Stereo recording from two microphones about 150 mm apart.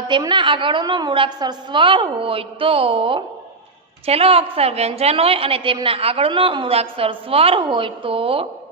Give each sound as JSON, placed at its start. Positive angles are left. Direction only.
{"t": 0.0, "sound": "a woman's voice", "side_deg": -30}